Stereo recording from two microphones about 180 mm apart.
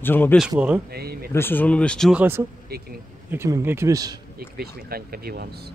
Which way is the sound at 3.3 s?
15° right (ahead or behind).